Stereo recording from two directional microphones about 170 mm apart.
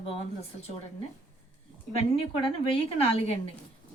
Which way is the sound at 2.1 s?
35° left (ahead or behind).